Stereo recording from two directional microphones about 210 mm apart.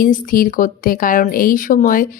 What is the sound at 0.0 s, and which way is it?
A woman's voice, 40° left (ahead or behind).